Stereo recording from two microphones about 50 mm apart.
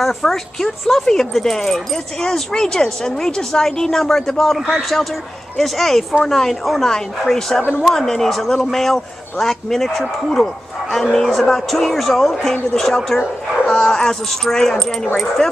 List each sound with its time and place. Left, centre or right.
0.0 s speech: centre